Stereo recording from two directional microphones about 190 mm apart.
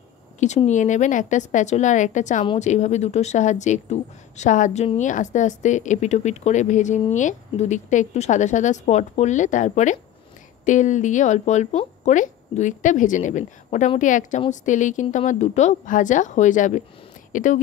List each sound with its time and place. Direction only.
0.4 s speech: 40° left (ahead or behind)